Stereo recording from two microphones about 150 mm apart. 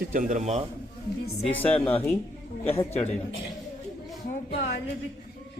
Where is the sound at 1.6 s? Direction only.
10° left (ahead or behind).